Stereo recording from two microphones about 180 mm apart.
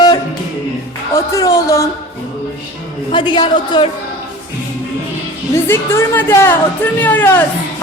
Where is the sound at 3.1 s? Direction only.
25° left (ahead or behind).